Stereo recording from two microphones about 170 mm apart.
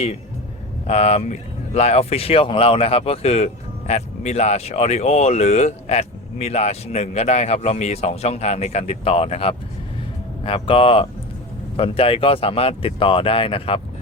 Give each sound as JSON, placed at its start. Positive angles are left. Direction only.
{"t": 0.9, "sound": "speech", "side_deg": 40}